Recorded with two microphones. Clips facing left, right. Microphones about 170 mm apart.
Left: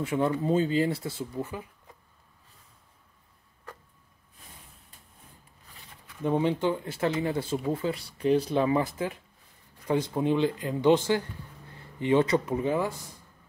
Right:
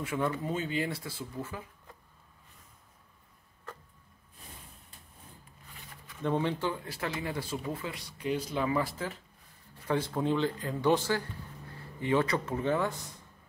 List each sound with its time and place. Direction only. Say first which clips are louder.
0.0 s speech: left 5 dB; 25° left (ahead or behind)
6.2 s speech: left 5 dB; 15° left (ahead or behind)